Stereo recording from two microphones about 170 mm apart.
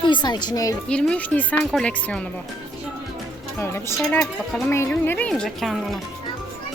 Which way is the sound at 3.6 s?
15° left (ahead or behind).